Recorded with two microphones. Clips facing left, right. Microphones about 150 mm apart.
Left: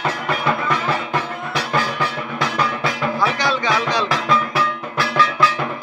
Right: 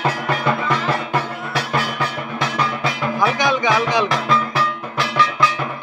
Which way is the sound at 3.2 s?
20° right (ahead or behind).